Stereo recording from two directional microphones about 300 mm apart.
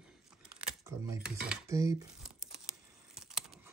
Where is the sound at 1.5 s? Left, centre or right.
Centre.